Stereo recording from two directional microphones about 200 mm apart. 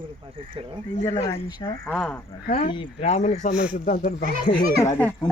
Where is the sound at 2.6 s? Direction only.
25° left (ahead or behind).